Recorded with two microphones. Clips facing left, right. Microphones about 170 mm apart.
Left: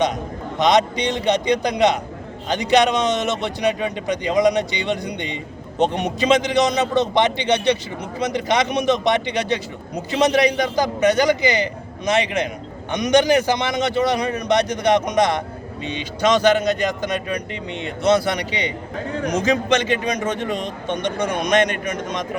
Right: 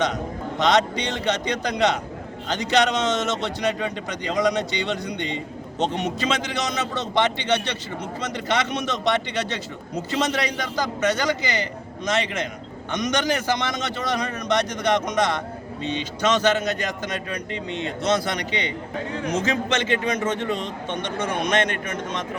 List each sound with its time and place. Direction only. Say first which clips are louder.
0.6 s a man's voice: left 3 dB; 15° left (ahead or behind)